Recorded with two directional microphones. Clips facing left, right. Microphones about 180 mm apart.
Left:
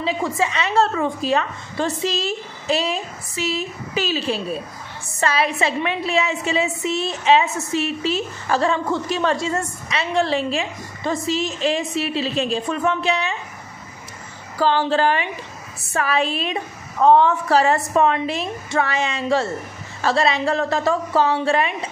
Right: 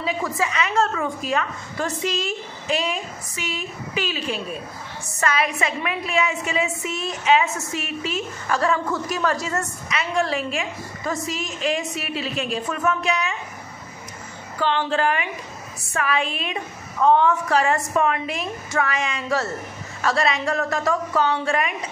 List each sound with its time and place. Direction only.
0.4 s a woman's voice: 30° left (ahead or behind)
14.6 s a woman's voice: 35° left (ahead or behind)